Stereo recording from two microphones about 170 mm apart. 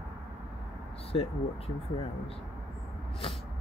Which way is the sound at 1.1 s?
35° left (ahead or behind).